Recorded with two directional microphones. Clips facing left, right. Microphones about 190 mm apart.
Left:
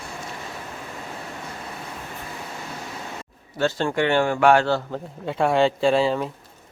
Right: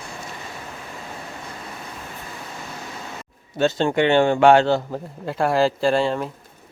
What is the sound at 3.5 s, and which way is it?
Speech, 20° right (ahead or behind).